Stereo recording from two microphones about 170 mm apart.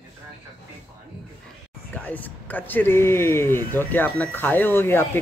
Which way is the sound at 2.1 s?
10° left (ahead or behind).